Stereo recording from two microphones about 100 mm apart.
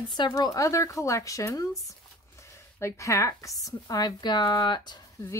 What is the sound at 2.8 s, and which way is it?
Speech, 30° left (ahead or behind).